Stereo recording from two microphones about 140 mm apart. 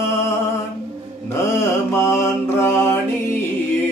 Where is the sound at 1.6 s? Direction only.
20° left (ahead or behind).